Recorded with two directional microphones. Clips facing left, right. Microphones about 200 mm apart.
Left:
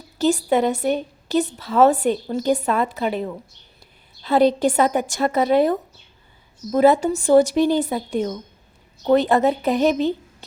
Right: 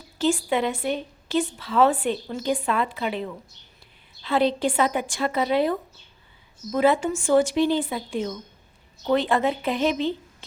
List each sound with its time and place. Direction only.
0.2 s a woman's voice: 40° left (ahead or behind)